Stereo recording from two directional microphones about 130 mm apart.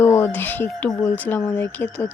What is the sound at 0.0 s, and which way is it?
Speech, 20° left (ahead or behind).